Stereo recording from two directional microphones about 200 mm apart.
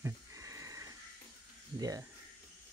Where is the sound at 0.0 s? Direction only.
15° right (ahead or behind).